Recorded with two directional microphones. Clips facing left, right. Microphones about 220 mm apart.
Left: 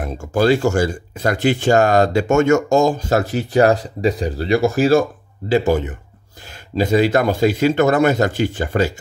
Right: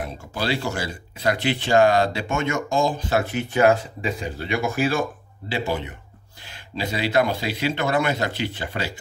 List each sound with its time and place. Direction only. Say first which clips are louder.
0.0 s speech: left 11 dB; 45° left (ahead or behind)